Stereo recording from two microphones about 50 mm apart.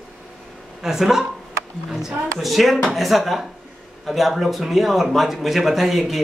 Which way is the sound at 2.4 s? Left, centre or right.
Centre.